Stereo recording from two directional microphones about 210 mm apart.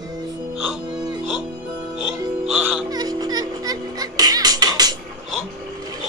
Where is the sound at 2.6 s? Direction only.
15° right (ahead or behind).